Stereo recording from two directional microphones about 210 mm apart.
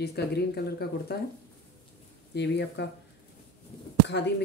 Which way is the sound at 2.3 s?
55° left (ahead or behind).